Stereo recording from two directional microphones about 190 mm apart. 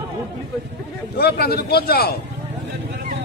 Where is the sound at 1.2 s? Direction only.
55° left (ahead or behind).